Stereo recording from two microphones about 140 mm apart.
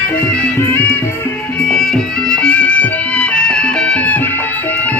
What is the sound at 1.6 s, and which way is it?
Music, 5° left (ahead or behind).